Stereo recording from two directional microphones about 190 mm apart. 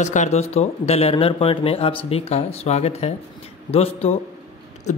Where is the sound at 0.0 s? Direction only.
40° left (ahead or behind).